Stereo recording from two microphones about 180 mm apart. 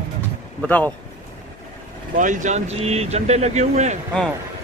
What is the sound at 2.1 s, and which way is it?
A man's voice, 45° right (ahead or behind).